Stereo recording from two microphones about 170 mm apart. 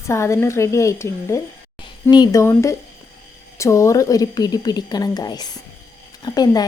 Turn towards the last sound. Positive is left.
turn(degrees=25)  # may be behind; listen again after turning